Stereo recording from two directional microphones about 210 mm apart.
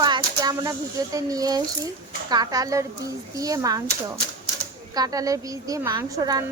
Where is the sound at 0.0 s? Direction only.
20° right (ahead or behind).